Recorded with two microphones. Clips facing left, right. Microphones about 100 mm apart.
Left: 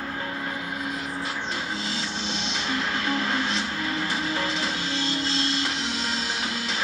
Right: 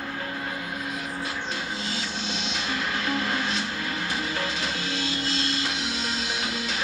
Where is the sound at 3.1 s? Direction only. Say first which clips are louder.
Left 1 dB; centre (ahead or behind).